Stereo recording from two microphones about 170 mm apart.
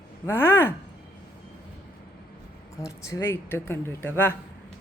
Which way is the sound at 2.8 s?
20° left (ahead or behind).